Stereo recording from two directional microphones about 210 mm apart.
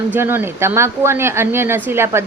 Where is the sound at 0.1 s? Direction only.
10° right (ahead or behind).